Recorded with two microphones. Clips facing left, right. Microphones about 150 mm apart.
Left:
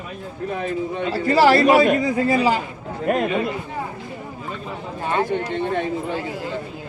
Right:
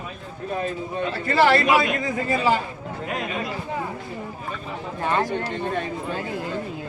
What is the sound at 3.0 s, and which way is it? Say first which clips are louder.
Speech: left 9 dB; 55° left (ahead or behind).